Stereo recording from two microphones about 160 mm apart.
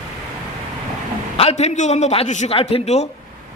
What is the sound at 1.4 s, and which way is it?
A man's voice, 40° left (ahead or behind).